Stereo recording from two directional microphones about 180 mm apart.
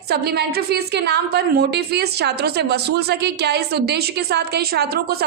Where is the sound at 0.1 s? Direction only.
60° right (ahead or behind).